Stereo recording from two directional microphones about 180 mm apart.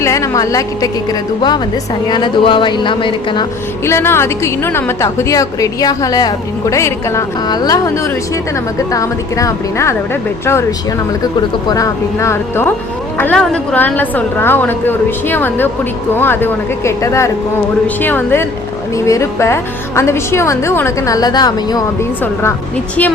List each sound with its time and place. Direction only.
0.0 s a woman's voice: 15° left (ahead or behind)
3.8 s a woman's voice: 15° left (ahead or behind)